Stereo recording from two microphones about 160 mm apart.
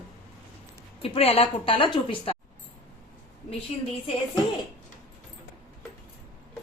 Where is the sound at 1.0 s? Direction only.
35° left (ahead or behind).